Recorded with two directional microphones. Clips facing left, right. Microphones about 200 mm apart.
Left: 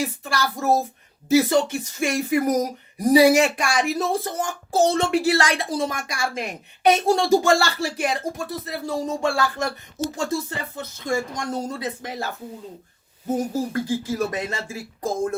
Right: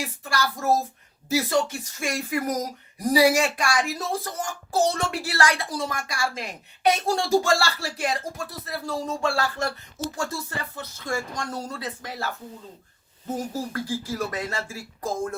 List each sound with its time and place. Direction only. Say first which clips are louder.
0.0 s speech: left 3 dB; 25° left (ahead or behind)